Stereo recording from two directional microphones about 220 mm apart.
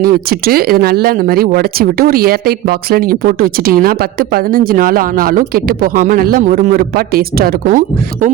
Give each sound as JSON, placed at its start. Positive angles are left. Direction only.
{"t": 0.0, "sound": "speech", "side_deg": -45}